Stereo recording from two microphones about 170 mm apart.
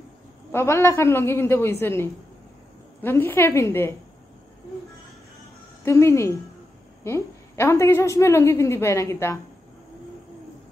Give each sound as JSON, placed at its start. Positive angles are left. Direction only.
{"t": 0.5, "sound": "a woman's voice", "side_deg": 15}
{"t": 5.9, "sound": "a woman's voice", "side_deg": 15}